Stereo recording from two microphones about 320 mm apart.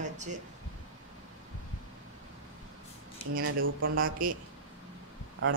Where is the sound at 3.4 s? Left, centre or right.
Right.